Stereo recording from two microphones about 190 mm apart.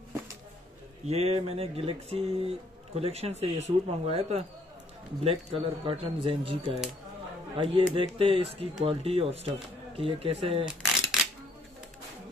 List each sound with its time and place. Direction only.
1.0 s speech: 30° right (ahead or behind)
10.8 s shuffling cards: 5° right (ahead or behind)